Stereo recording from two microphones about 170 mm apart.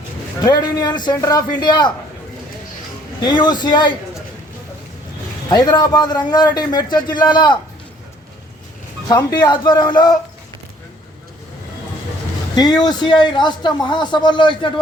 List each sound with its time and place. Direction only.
0.4 s a man's voice: 25° left (ahead or behind)
3.2 s a man's voice: 25° left (ahead or behind)
5.5 s a man's voice: 25° left (ahead or behind)
9.0 s a man's voice: 25° left (ahead or behind)
12.5 s a man's voice: 25° left (ahead or behind)